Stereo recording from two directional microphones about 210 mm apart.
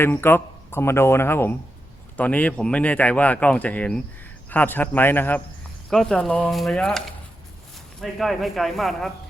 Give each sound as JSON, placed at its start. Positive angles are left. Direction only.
{"t": 0.0, "sound": "a man's voice", "side_deg": 10}
{"t": 8.0, "sound": "a man's voice", "side_deg": 0}